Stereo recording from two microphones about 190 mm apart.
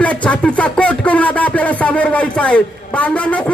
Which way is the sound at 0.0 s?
5° left (ahead or behind).